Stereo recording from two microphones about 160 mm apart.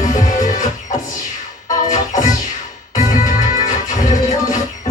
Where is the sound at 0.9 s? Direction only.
20° left (ahead or behind).